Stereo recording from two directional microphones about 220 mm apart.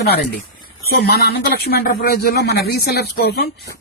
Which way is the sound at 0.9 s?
45° left (ahead or behind).